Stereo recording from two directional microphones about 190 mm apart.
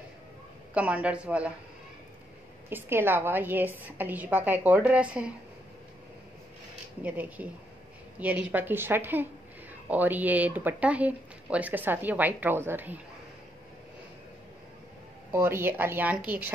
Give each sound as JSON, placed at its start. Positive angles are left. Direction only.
{"t": 0.7, "sound": "speech", "side_deg": -5}
{"t": 2.7, "sound": "speech", "side_deg": -10}
{"t": 7.0, "sound": "speech", "side_deg": -10}
{"t": 15.3, "sound": "speech", "side_deg": -10}